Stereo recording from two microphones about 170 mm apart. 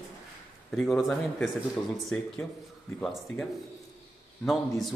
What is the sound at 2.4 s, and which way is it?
Speech, 15° left (ahead or behind).